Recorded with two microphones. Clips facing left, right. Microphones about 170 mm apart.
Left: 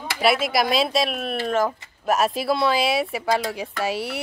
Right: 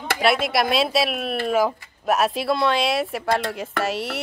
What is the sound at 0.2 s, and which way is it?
Speech, centre (ahead or behind).